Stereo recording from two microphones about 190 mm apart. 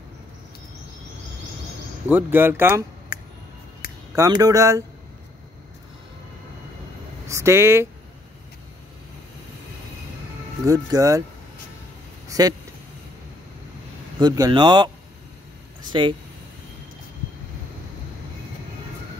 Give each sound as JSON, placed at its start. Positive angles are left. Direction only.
{"t": 2.0, "sound": "speech", "side_deg": -10}
{"t": 4.1, "sound": "speech", "side_deg": -15}
{"t": 7.2, "sound": "speech", "side_deg": -15}
{"t": 10.7, "sound": "speech", "side_deg": -15}
{"t": 12.3, "sound": "speech", "side_deg": -20}
{"t": 14.2, "sound": "speech", "side_deg": -20}
{"t": 15.9, "sound": "speech", "side_deg": -25}